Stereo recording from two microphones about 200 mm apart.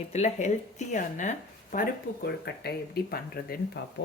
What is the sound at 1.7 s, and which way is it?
Speech, 50° left (ahead or behind).